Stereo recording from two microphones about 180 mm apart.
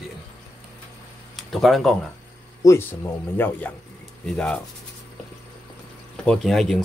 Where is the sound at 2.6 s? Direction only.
15° left (ahead or behind).